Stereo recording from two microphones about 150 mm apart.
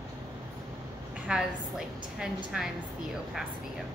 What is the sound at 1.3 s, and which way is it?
A woman's voice, 5° right (ahead or behind).